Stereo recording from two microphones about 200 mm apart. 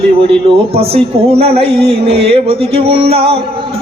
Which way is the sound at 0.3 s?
30° right (ahead or behind).